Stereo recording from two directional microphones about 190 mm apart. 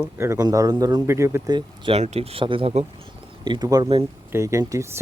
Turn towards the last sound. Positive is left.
turn(degrees=-15)  # may be behind; listen again after turning